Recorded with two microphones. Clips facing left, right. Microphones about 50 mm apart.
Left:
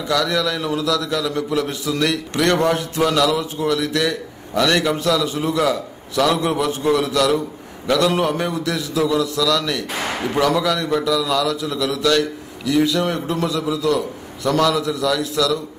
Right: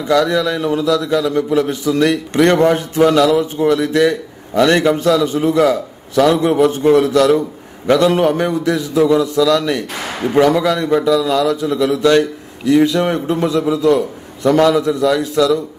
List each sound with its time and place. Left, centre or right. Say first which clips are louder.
0.0 s a man's voice: right 5 dB; right